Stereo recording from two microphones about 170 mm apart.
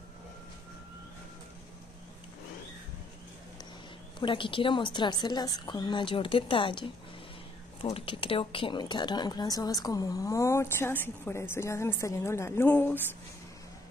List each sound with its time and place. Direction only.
4.2 s a woman's voice: 30° left (ahead or behind); by 13.0 s 10° left (ahead or behind)